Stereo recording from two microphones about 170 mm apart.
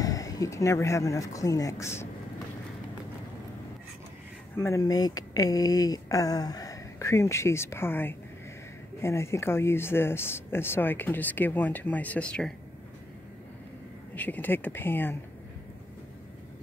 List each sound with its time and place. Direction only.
0.0 s speech: 20° left (ahead or behind)
4.6 s speech: 15° left (ahead or behind)
14.1 s speech: 10° left (ahead or behind)